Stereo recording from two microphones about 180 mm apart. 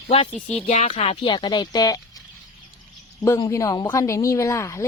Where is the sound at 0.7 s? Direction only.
35° left (ahead or behind).